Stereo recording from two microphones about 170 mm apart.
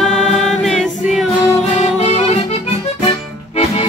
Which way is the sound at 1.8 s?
40° left (ahead or behind).